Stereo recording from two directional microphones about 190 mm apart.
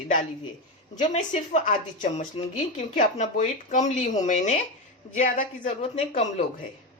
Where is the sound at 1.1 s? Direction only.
40° left (ahead or behind).